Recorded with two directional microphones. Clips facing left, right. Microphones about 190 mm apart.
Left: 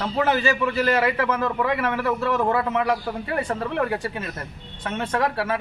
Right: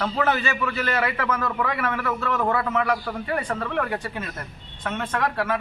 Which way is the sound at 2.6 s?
20° left (ahead or behind).